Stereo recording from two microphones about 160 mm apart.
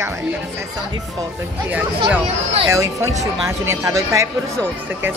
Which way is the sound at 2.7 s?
20° right (ahead or behind).